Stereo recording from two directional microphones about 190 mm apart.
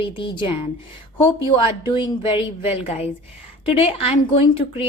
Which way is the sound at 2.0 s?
25° left (ahead or behind).